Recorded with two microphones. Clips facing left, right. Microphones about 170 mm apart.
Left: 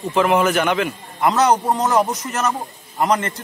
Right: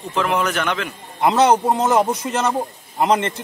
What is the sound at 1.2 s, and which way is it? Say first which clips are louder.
A man's voice: right 1 dB; 25° right (ahead or behind).